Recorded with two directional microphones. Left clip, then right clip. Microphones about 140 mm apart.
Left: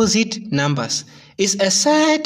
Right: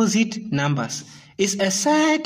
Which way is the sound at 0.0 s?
30° left (ahead or behind).